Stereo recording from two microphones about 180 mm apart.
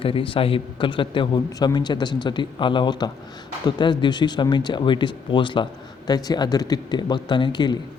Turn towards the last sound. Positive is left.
turn(degrees=25)  # may be behind; listen again after turning